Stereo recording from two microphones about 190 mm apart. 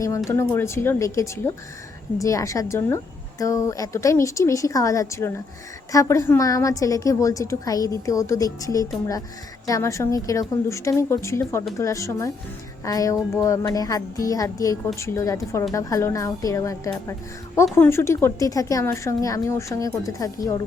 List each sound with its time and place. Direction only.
0.3 s a woman's voice: 15° left (ahead or behind)